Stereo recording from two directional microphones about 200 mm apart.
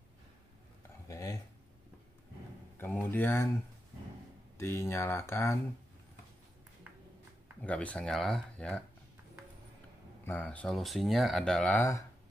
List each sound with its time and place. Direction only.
1.0 s a sound: 15° left (ahead or behind)
2.8 s speech: 10° left (ahead or behind)
4.6 s speech: 15° left (ahead or behind)
7.6 s speech: 5° left (ahead or behind)
10.2 s speech: 10° left (ahead or behind)